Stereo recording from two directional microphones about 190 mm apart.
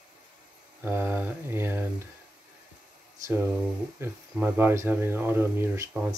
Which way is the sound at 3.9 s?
10° right (ahead or behind).